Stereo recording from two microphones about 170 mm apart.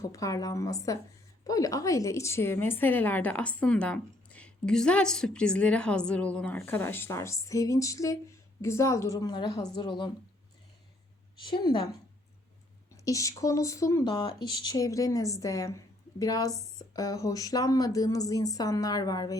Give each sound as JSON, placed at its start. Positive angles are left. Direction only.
{"t": 0.1, "sound": "a woman's voice", "side_deg": 20}
{"t": 11.4, "sound": "speech", "side_deg": 25}
{"t": 13.1, "sound": "a woman's voice", "side_deg": 20}
{"t": 14.2, "sound": "speech", "side_deg": 30}